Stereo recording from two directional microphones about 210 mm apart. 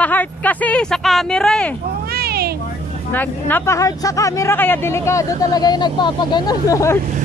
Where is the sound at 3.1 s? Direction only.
10° left (ahead or behind).